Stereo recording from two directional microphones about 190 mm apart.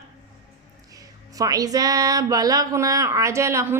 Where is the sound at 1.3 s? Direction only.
20° right (ahead or behind).